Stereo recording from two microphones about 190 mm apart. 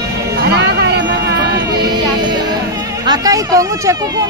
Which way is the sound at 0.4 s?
60° right (ahead or behind).